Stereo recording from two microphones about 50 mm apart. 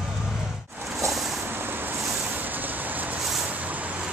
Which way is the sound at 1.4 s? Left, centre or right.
Right.